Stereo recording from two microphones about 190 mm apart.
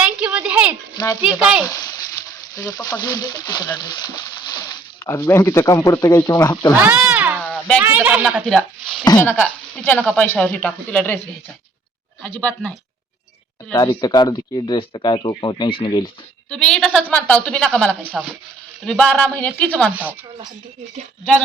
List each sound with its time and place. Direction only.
0.0 s a sound: 5° right (ahead or behind)
1.2 s speech: 5° right (ahead or behind)
1.6 s speech: 20° left (ahead or behind)
6.8 s cat: 5° right (ahead or behind)
7.3 s a sound: 5° left (ahead or behind)
7.8 s speech: 10° right (ahead or behind); by 11.2 s 10° left (ahead or behind)
12.2 s speech: 5° left (ahead or behind)
14.0 s speech: 20° left (ahead or behind)
16.5 s speech: 5° left (ahead or behind)